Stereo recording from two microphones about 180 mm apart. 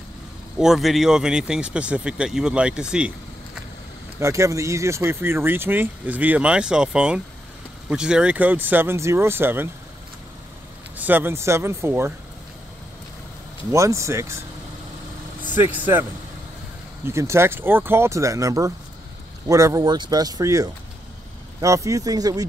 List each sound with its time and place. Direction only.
0.6 s speech: centre (ahead or behind)
4.2 s speech: 15° right (ahead or behind)
11.0 s speech: 10° right (ahead or behind)
13.7 s speech: 15° right (ahead or behind)
15.4 s speech: 10° right (ahead or behind)